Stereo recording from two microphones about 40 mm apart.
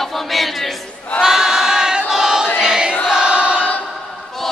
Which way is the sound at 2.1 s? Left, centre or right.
Centre.